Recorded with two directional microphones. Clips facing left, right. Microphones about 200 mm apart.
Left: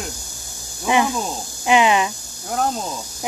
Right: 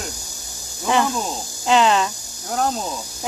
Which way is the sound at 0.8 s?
15° left (ahead or behind).